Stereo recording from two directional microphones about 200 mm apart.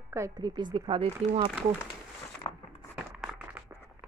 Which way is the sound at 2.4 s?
20° left (ahead or behind).